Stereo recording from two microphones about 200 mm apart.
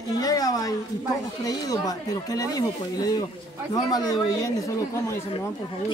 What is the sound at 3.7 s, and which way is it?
Speech, 20° left (ahead or behind).